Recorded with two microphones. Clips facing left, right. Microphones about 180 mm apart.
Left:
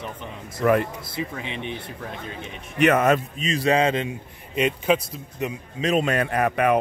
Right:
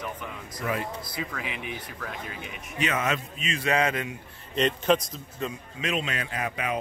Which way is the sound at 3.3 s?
35° left (ahead or behind).